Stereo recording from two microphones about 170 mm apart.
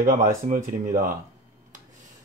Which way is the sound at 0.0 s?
55° right (ahead or behind).